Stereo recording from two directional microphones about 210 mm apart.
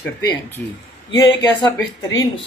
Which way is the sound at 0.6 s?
10° left (ahead or behind).